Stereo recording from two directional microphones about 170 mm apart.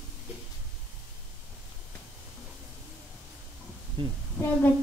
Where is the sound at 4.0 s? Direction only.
30° right (ahead or behind).